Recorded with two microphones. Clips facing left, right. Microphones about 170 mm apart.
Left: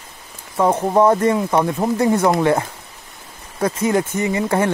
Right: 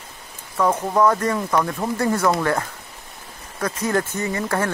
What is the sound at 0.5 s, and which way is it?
Speech, 25° left (ahead or behind).